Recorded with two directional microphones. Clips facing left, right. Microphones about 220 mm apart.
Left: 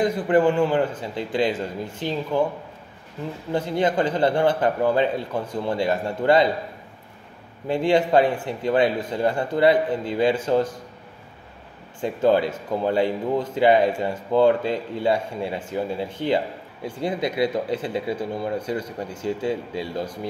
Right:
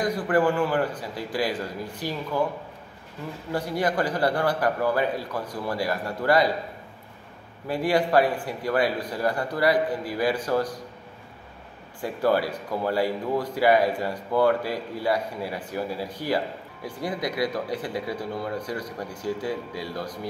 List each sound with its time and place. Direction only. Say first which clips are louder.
0.0 s speech: left 4 dB; 25° left (ahead or behind)
3.5 s speech: left 4 dB; 25° left (ahead or behind)
7.6 s speech: left 4 dB; 25° left (ahead or behind)
12.0 s speech: left 4 dB; 20° left (ahead or behind)